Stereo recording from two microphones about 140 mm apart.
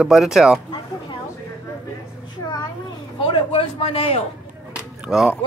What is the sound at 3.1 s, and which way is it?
A man's voice, 40° left (ahead or behind).